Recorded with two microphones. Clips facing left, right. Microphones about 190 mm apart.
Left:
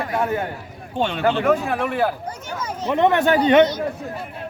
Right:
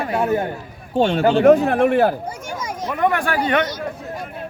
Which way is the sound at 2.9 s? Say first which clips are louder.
Left 4 dB; 25° left (ahead or behind).